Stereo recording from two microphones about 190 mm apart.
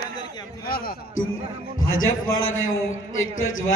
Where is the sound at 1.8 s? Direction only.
90° left.